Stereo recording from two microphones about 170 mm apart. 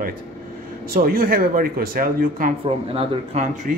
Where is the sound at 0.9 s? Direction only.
55° right (ahead or behind).